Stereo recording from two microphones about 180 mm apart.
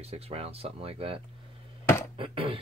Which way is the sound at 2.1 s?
30° right (ahead or behind).